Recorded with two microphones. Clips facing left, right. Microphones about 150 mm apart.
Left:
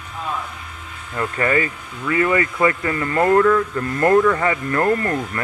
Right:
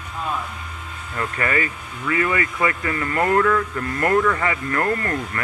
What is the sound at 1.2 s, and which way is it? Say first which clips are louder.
Speech: left 4 dB; 25° left (ahead or behind).